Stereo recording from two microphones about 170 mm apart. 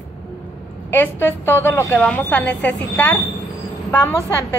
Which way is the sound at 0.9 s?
10° left (ahead or behind).